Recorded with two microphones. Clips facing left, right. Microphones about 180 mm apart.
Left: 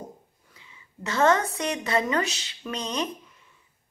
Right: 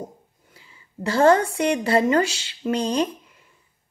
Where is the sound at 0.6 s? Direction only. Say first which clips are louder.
Right 7 dB; 35° right (ahead or behind).